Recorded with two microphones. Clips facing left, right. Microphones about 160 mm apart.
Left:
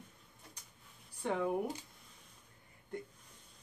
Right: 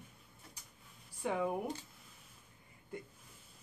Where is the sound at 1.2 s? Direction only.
5° right (ahead or behind).